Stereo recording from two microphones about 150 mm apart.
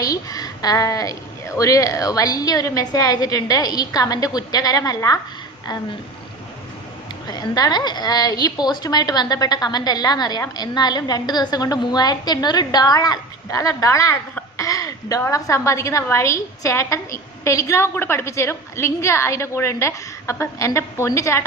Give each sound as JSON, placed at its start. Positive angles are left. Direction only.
{"t": 0.0, "sound": "a sound", "side_deg": 25}
{"t": 1.5, "sound": "a woman's voice", "side_deg": 20}
{"t": 7.3, "sound": "a woman's voice", "side_deg": 25}